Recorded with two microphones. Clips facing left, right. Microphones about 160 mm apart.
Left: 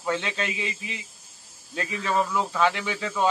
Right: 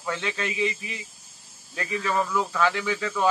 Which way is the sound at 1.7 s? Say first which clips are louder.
Left 1 dB; 25° left (ahead or behind).